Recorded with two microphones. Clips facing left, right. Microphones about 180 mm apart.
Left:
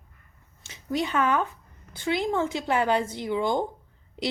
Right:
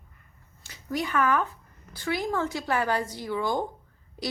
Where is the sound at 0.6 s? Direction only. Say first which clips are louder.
Left 3 dB; 25° left (ahead or behind).